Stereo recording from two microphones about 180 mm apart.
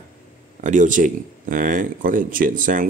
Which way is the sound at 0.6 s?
45° right (ahead or behind).